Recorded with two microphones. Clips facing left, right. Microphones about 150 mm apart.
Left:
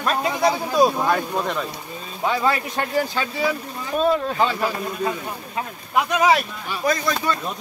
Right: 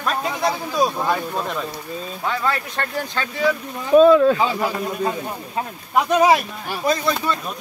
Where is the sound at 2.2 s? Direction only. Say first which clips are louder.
Left 3 dB; 15° left (ahead or behind).